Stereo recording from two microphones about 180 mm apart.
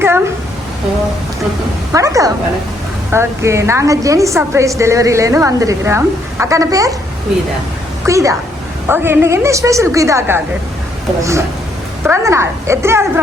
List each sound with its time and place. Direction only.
1.9 s a woman's voice: 15° right (ahead or behind)
8.0 s a woman's voice: 15° right (ahead or behind)